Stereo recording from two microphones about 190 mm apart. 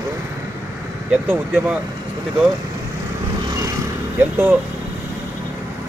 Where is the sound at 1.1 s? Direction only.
10° right (ahead or behind).